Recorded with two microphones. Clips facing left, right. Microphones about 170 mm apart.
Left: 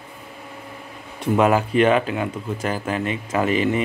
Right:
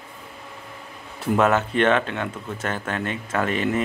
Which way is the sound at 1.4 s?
10° left (ahead or behind).